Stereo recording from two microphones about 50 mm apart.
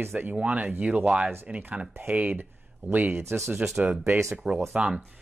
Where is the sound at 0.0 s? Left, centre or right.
Right.